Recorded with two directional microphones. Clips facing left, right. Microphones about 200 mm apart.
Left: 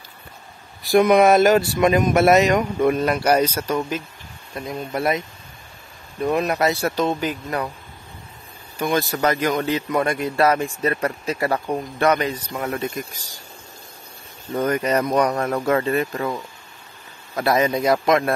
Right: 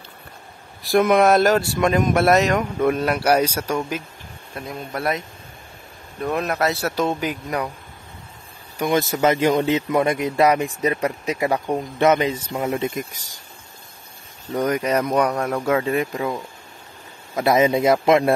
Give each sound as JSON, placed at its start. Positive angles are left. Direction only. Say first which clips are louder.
{"t": 0.8, "sound": "speech", "louder": "left 2 dB", "side_deg": 0}
{"t": 6.3, "sound": "speech", "louder": "left 1 dB", "side_deg": 0}
{"t": 8.7, "sound": "speech", "louder": "right 1 dB", "side_deg": -20}
{"t": 14.7, "sound": "speech", "louder": "left 1 dB", "side_deg": -10}
{"t": 17.4, "sound": "speech", "louder": "right 2 dB", "side_deg": -20}